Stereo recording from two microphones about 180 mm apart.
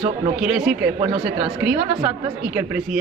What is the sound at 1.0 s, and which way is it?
Speech, 25° right (ahead or behind).